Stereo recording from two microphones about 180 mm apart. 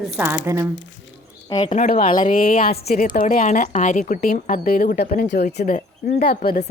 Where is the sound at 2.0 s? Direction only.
45° left (ahead or behind); by 6.4 s 60° left (ahead or behind).